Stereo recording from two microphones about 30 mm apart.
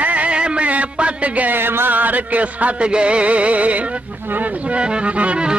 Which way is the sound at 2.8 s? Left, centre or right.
Right.